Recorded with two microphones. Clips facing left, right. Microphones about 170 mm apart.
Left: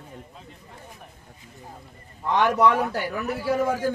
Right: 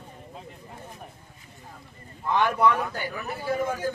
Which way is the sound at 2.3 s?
80° left.